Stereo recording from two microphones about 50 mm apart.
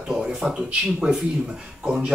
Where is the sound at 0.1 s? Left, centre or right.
Centre.